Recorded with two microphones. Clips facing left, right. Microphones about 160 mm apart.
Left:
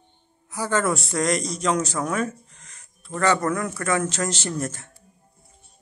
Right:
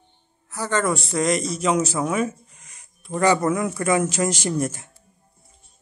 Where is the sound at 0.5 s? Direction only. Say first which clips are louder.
Even; 10° left (ahead or behind); by 4.9 s 10° right (ahead or behind).